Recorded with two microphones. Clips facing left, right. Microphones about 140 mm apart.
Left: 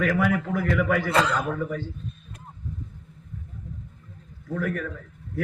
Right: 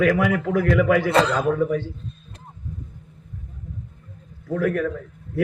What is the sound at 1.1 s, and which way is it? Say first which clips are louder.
Speech: right 5 dB; 30° right (ahead or behind).